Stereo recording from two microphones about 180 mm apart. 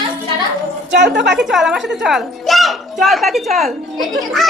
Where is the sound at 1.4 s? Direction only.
Centre (ahead or behind).